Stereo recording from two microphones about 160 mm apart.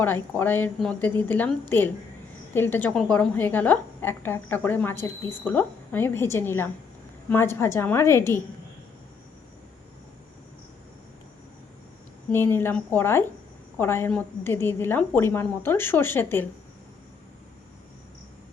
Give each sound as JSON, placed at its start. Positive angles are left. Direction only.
{"t": 0.0, "sound": "a woman's voice", "side_deg": 10}
{"t": 12.3, "sound": "a woman's voice", "side_deg": 15}